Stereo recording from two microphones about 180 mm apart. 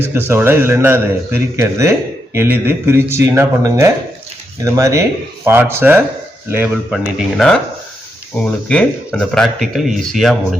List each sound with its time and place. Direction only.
0.1 s speech: 15° right (ahead or behind)
6.9 s speech: centre (ahead or behind)